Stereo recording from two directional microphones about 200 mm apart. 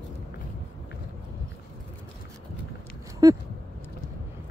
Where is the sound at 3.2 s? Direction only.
15° right (ahead or behind).